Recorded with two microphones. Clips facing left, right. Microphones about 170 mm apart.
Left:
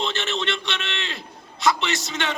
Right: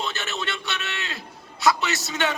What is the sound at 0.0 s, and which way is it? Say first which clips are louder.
Speech: left 4 dB; 5° right (ahead or behind).